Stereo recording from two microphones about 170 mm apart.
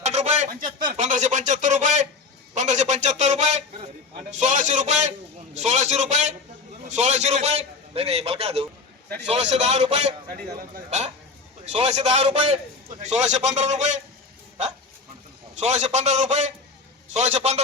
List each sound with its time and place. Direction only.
0.0 s a sound: 40° right (ahead or behind)
0.9 s a man's voice: 45° right (ahead or behind)
11.6 s a man's voice: 40° right (ahead or behind)
15.5 s a man's voice: 40° right (ahead or behind)